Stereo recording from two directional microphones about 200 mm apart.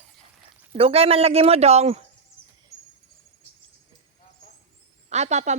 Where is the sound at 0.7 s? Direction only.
30° right (ahead or behind).